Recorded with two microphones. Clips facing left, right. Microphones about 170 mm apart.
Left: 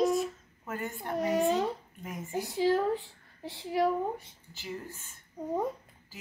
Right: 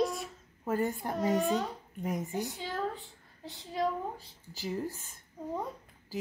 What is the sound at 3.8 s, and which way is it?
Speech, 20° left (ahead or behind).